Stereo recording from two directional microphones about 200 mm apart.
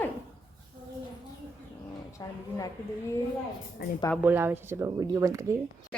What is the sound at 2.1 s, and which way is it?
Speech, 15° left (ahead or behind).